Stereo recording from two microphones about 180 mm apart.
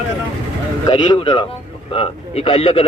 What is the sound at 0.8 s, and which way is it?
A man's voice, 25° left (ahead or behind).